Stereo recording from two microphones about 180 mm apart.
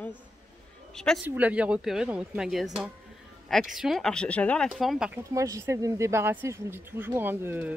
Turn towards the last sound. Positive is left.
turn(degrees=-10)  # may be behind; listen again after turning